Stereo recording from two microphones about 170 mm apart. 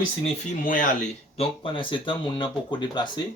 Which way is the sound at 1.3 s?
35° left (ahead or behind).